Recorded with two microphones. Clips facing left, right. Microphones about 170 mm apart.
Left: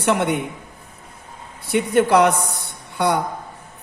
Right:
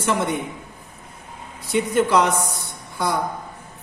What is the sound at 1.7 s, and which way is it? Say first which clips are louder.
A woman's voice: left 3 dB; 60° left (ahead or behind).